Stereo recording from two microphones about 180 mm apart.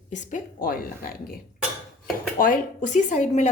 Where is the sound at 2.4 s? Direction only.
45° left (ahead or behind).